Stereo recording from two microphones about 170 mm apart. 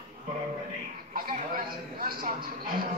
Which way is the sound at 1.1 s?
55° right (ahead or behind).